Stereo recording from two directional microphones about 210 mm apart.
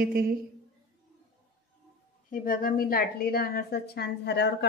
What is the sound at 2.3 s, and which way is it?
A woman's voice, 45° left (ahead or behind).